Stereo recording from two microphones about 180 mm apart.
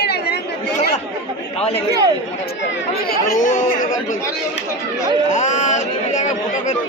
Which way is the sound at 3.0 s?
50° left (ahead or behind).